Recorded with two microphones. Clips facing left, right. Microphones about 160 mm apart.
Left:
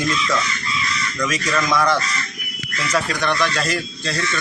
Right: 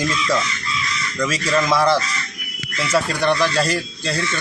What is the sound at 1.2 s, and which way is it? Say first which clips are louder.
A man's voice: right 3 dB; 30° right (ahead or behind).